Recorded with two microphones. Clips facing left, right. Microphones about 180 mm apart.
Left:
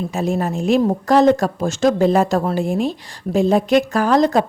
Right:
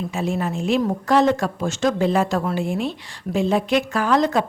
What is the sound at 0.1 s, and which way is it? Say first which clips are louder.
Speech: left 3 dB; 40° left (ahead or behind).